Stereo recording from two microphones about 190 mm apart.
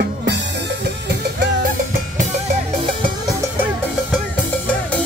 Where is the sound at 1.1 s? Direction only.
65° right (ahead or behind).